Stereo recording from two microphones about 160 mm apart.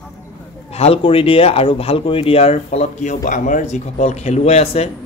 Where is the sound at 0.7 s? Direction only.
40° left (ahead or behind).